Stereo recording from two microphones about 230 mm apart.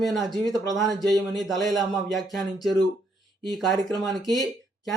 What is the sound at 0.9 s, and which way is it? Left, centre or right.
Speech, centre.